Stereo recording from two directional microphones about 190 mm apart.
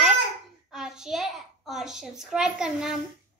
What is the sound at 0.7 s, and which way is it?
A child's voice, 5° right (ahead or behind).